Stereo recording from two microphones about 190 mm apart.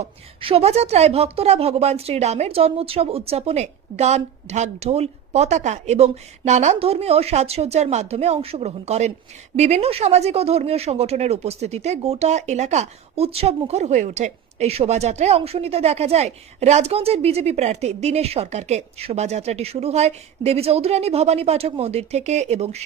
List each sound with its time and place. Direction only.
0.0 s speech: 30° right (ahead or behind)